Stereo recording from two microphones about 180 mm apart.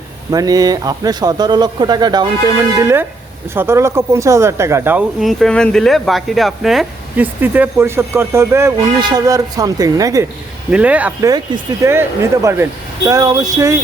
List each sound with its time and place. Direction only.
0.3 s a man's voice: 20° right (ahead or behind)
5.2 s a man's voice: centre (ahead or behind); by 10.2 s 20° right (ahead or behind)
10.7 s speech: 5° right (ahead or behind)
11.3 s a man's voice: 20° right (ahead or behind)